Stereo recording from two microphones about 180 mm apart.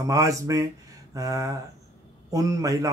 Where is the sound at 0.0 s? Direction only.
20° right (ahead or behind).